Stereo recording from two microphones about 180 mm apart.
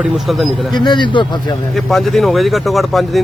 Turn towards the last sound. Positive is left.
turn(degrees=0)  # may be behind; listen again after turning